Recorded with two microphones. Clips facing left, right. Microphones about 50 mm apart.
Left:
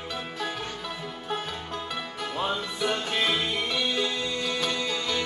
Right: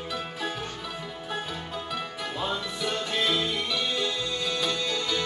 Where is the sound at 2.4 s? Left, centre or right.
Left.